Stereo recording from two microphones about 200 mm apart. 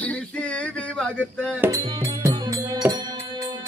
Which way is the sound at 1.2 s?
5° right (ahead or behind).